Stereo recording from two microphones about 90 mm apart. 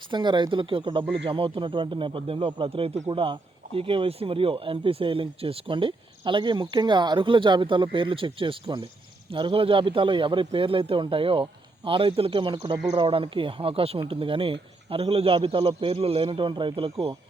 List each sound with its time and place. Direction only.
0.1 s speech: 60° right (ahead or behind); by 11.4 s 90° right
11.9 s a man's voice: 75° right (ahead or behind)